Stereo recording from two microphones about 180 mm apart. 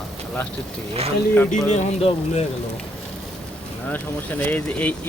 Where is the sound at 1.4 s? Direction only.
40° left (ahead or behind).